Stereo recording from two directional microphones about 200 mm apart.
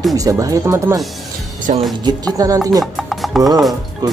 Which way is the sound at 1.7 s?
35° right (ahead or behind).